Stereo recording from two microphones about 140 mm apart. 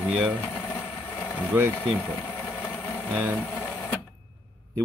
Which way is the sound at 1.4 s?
10° right (ahead or behind).